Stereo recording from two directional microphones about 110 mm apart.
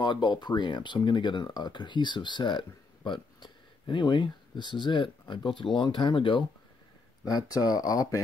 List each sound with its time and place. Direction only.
0.0 s speech: 45° left (ahead or behind)
7.2 s speech: 35° left (ahead or behind)